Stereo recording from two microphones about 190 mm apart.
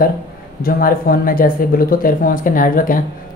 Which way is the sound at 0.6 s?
50° left (ahead or behind).